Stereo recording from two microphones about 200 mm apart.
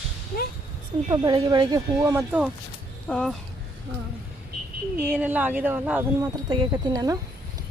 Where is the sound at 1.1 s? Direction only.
20° right (ahead or behind).